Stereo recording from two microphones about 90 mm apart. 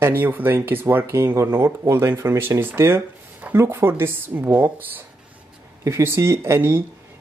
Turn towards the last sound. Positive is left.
turn(degrees=-25)  # may be behind; listen again after turning